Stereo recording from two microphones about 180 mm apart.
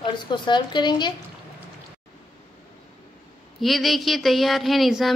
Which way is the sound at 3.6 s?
Centre (ahead or behind).